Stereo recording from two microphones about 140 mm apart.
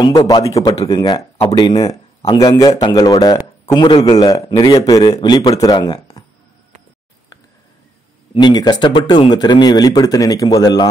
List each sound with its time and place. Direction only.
0.0 s a man's voice: 30° left (ahead or behind)
8.4 s a man's voice: 30° left (ahead or behind)